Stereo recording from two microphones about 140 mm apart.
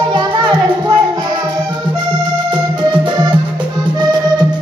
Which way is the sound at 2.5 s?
35° right (ahead or behind).